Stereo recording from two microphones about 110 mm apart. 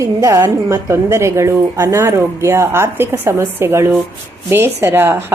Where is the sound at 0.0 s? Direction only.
30° right (ahead or behind).